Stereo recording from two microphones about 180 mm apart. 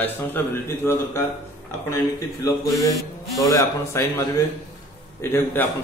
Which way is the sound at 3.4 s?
15° left (ahead or behind).